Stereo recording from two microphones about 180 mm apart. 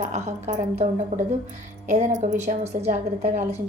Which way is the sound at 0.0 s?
40° right (ahead or behind).